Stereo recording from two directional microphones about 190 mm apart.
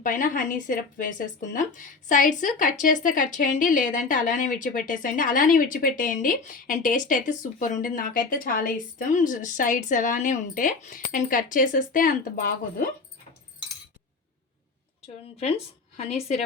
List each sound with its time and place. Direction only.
0.0 s a woman's voice: 45° left (ahead or behind)
15.0 s a woman's voice: 30° left (ahead or behind)